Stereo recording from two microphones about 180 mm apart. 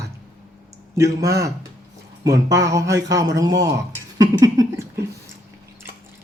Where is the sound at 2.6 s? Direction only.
20° right (ahead or behind).